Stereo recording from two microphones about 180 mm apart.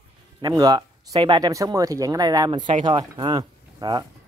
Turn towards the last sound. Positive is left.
turn(degrees=-20)  # may be behind; listen again after turning